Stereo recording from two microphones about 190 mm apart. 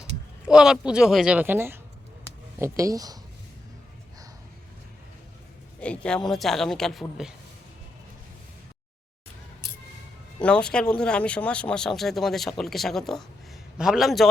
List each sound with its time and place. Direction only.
0.4 s speech: 5° right (ahead or behind); by 3.2 s 20° right (ahead or behind)
5.8 s speech: 5° left (ahead or behind)
10.4 s speech: 5° left (ahead or behind)